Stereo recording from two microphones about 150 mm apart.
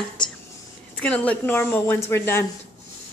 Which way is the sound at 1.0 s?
10° left (ahead or behind).